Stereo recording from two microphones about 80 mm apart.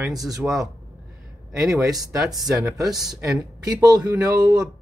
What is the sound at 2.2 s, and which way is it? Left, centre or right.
Speech, centre.